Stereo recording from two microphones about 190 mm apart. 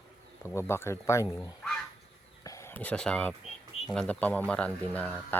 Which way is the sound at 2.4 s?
15° left (ahead or behind).